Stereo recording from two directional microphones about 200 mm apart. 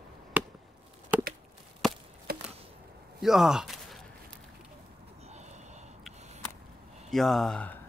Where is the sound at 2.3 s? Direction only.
50° right (ahead or behind).